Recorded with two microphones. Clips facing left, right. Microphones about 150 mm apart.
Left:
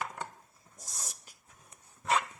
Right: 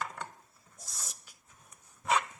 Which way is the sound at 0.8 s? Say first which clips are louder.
Left 2 dB; 40° left (ahead or behind).